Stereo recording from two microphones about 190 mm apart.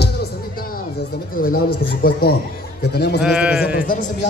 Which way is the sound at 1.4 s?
50° left (ahead or behind).